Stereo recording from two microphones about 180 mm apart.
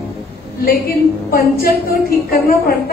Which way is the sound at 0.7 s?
55° left (ahead or behind).